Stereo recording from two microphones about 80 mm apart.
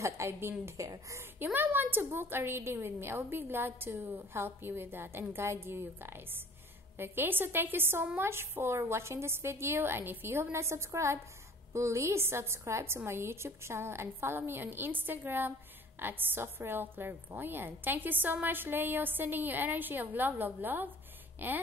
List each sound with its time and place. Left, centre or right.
0.0 s a woman's voice: right
0.7 s a woman's voice: right
1.4 s a woman's voice: right